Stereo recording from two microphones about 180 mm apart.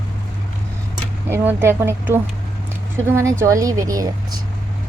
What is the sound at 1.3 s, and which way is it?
Speech, 10° right (ahead or behind).